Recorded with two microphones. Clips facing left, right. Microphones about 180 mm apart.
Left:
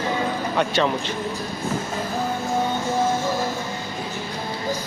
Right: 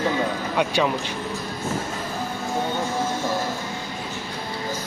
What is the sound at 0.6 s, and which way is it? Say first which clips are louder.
Speech: even; 10° right (ahead or behind).